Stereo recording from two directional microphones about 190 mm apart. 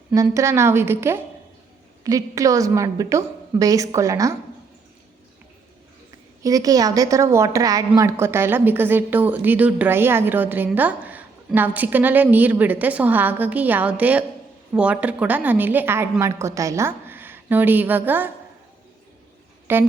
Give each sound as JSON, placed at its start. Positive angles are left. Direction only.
{"t": 0.1, "sound": "a woman's voice", "side_deg": -15}
{"t": 6.4, "sound": "a woman's voice", "side_deg": -20}
{"t": 19.7, "sound": "a woman's voice", "side_deg": -10}